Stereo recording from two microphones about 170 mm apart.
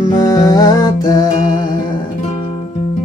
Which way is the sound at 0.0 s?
25° left (ahead or behind).